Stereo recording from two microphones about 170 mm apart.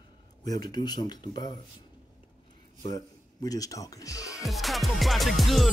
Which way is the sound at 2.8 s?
20° left (ahead or behind).